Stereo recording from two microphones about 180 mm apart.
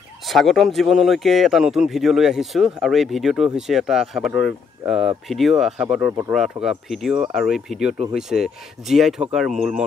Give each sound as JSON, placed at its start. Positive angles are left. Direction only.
{"t": 0.3, "sound": "speech", "side_deg": 0}